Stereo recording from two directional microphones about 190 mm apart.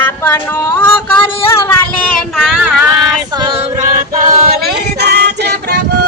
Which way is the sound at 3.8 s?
45° right (ahead or behind).